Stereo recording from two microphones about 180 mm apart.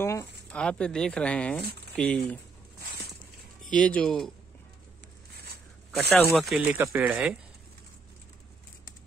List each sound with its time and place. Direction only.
0.0 s speech: 15° left (ahead or behind)
3.8 s speech: 5° left (ahead or behind)
5.9 s speech: 5° left (ahead or behind)
6.8 s speech: 10° right (ahead or behind)